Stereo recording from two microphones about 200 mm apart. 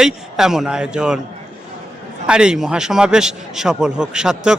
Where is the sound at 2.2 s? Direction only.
5° right (ahead or behind).